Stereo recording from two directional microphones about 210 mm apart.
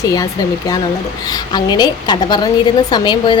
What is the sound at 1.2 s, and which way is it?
A woman's voice, 20° left (ahead or behind).